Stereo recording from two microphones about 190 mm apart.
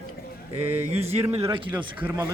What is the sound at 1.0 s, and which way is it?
Speech, 35° right (ahead or behind).